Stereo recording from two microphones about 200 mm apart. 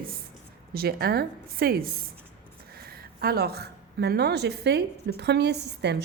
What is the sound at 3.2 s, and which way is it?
A woman's voice, 50° right (ahead or behind).